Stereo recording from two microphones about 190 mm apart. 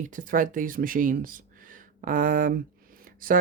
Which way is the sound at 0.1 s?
45° right (ahead or behind).